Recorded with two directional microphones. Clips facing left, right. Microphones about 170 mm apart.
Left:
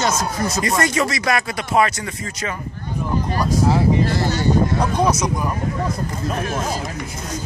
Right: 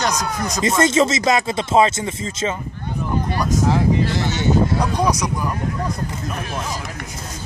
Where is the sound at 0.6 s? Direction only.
25° right (ahead or behind).